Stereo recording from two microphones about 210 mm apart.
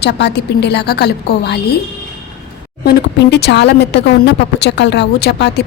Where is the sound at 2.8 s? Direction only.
50° left (ahead or behind).